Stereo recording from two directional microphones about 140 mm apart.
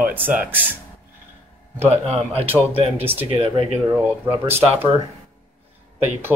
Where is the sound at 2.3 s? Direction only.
45° right (ahead or behind).